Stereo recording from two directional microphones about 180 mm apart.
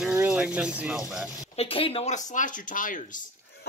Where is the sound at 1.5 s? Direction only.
30° left (ahead or behind); by 3.7 s 45° left (ahead or behind).